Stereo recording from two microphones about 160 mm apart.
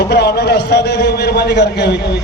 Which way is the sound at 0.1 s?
90° left.